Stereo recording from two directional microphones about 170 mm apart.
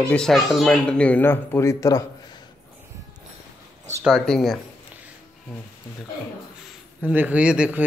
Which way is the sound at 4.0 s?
Centre (ahead or behind).